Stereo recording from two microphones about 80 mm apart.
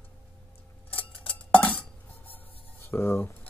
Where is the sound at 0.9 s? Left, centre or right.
Centre.